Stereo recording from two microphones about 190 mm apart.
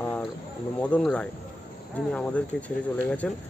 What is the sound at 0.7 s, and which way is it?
Speech, 5° left (ahead or behind).